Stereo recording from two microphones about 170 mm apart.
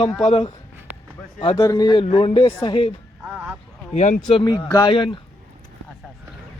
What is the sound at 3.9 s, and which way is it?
Speech, 45° left (ahead or behind).